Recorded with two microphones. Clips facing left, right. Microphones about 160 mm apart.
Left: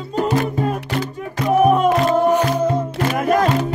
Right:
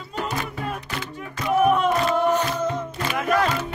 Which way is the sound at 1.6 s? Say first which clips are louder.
Left 4 dB; 40° left (ahead or behind).